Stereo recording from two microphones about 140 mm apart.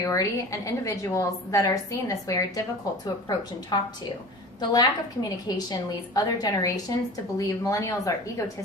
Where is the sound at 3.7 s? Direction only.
30° left (ahead or behind).